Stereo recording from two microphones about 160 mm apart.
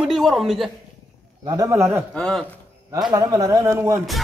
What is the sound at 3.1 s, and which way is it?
Speech, 20° right (ahead or behind).